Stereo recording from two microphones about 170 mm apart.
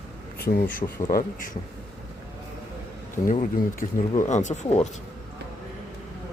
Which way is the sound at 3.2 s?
50° left (ahead or behind).